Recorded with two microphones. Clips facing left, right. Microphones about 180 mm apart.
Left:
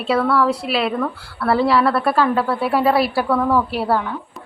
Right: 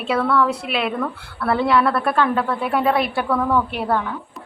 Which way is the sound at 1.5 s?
Centre (ahead or behind).